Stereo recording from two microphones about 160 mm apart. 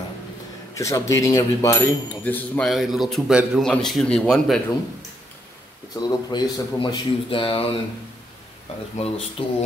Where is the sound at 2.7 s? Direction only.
Centre (ahead or behind).